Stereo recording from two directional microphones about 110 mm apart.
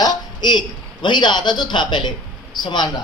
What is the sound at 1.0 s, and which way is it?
A man's voice, 45° left (ahead or behind).